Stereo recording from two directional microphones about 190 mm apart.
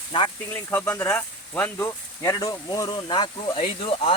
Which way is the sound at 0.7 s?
10° left (ahead or behind).